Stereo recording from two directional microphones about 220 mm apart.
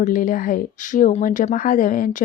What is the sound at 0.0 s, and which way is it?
Speech, 35° left (ahead or behind).